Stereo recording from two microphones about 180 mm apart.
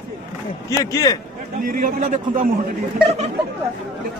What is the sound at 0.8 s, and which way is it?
Speech, 20° left (ahead or behind).